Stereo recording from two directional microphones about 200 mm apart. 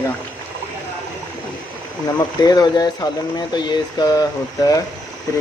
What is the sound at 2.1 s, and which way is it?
Speech, 20° left (ahead or behind).